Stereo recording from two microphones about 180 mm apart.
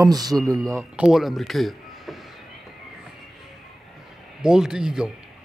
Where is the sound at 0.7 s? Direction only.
5° right (ahead or behind).